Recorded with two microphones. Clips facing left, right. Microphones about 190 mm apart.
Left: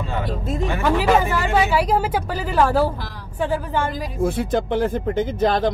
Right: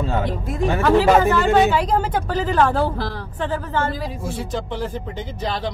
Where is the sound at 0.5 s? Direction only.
10° left (ahead or behind).